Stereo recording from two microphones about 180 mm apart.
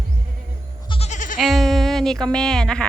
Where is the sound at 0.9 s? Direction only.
35° left (ahead or behind).